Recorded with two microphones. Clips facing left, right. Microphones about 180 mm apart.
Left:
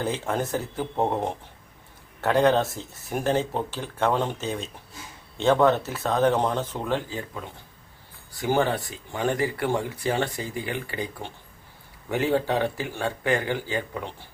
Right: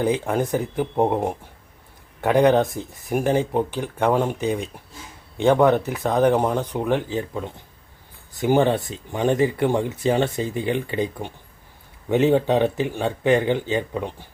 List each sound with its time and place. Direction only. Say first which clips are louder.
0.0 s speech: right 6 dB; 15° right (ahead or behind)